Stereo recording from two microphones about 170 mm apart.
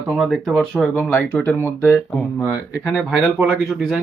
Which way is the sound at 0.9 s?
15° left (ahead or behind).